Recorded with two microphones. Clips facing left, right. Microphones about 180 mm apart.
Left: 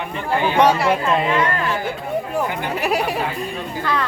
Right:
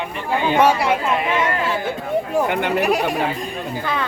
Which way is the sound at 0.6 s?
10° right (ahead or behind).